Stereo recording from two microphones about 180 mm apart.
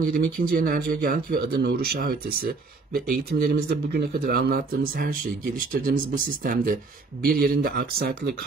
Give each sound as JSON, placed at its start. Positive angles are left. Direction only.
{"t": 0.0, "sound": "speech", "side_deg": -50}